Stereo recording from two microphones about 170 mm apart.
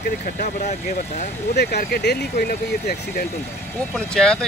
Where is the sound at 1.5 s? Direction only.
70° left (ahead or behind).